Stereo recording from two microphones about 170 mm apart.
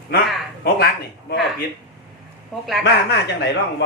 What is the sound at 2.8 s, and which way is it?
Speech, 75° left (ahead or behind).